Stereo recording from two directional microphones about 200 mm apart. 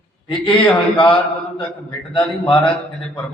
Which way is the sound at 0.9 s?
25° left (ahead or behind).